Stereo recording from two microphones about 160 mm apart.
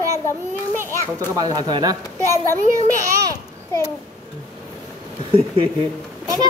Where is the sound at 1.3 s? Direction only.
25° right (ahead or behind).